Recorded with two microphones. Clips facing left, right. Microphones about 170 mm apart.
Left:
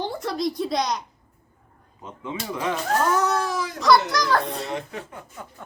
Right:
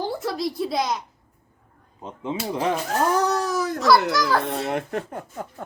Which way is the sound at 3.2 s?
35° right (ahead or behind).